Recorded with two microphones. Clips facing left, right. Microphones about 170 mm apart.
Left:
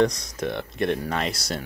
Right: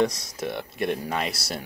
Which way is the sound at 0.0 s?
5° right (ahead or behind).